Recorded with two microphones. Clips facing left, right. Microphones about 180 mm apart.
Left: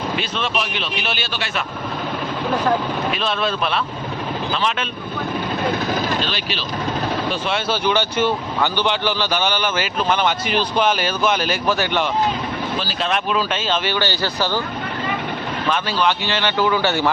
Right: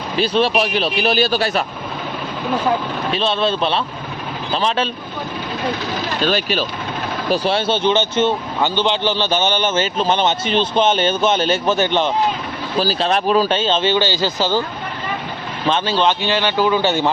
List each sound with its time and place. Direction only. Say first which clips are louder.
0.2 s speech: right 8 dB; 35° right (ahead or behind)
3.1 s speech: right 7 dB; 30° right (ahead or behind)
6.2 s speech: right 8 dB; 45° right (ahead or behind)
7.3 s speech: right 4 dB; 35° right (ahead or behind)
12.8 s speech: right 10 dB; 35° right (ahead or behind); by 14.6 s 15° right (ahead or behind)
15.6 s speech: right 4 dB; 25° right (ahead or behind)